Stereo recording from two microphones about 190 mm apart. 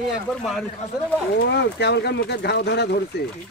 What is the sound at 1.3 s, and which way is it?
Speech, 65° left (ahead or behind).